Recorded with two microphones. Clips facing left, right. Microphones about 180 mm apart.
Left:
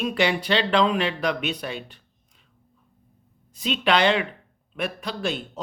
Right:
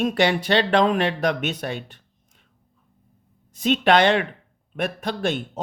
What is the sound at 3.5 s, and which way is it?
Speech, 45° right (ahead or behind).